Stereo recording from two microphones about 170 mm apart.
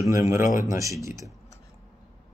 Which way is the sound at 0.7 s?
20° right (ahead or behind).